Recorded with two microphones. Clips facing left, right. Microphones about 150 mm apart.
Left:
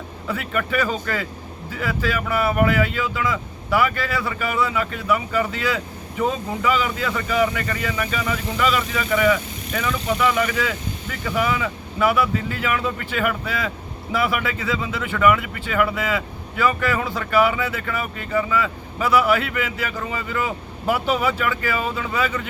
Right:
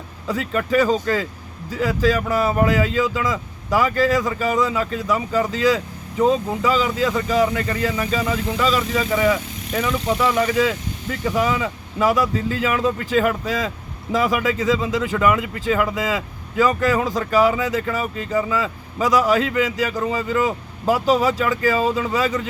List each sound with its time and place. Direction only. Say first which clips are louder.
0.3 s speech: right 4 dB; 35° right (ahead or behind)